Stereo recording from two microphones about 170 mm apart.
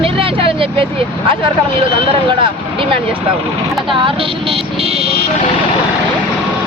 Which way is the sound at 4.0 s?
30° right (ahead or behind).